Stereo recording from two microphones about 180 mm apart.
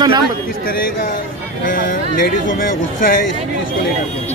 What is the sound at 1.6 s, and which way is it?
Speech, 50° left (ahead or behind).